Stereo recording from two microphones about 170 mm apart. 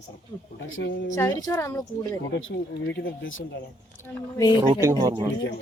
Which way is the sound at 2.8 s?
90° left.